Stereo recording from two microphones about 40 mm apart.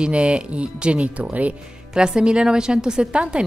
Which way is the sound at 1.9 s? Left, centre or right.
Right.